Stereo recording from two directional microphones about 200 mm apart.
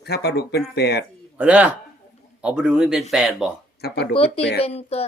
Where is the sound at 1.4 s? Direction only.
5° right (ahead or behind).